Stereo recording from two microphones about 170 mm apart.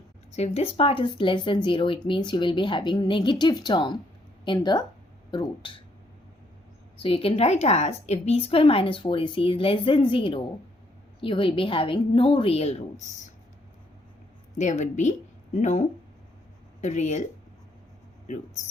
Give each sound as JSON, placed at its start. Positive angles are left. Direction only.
{"t": 0.3, "sound": "speech", "side_deg": 40}
{"t": 7.0, "sound": "speech", "side_deg": 30}
{"t": 14.6, "sound": "a woman's voice", "side_deg": 45}